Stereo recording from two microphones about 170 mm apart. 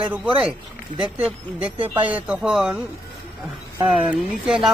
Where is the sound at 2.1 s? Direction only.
10° right (ahead or behind).